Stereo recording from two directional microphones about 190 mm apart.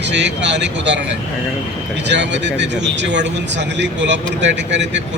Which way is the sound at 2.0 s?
65° right (ahead or behind).